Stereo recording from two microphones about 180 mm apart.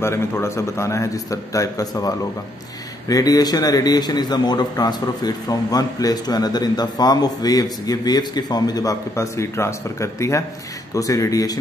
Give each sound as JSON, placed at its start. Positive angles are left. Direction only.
{"t": 0.0, "sound": "a man's voice", "side_deg": 15}